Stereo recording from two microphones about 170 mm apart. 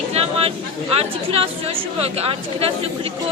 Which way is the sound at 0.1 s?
35° right (ahead or behind).